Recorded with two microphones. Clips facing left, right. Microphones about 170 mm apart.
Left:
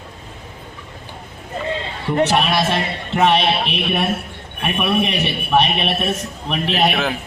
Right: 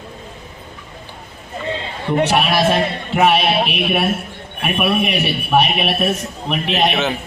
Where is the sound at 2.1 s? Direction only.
5° right (ahead or behind).